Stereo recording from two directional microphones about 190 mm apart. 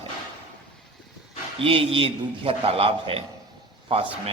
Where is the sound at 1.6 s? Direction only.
30° right (ahead or behind).